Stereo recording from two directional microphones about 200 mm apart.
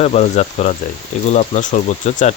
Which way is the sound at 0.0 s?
30° left (ahead or behind).